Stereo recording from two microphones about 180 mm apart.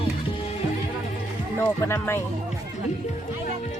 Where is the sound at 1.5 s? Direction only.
15° left (ahead or behind).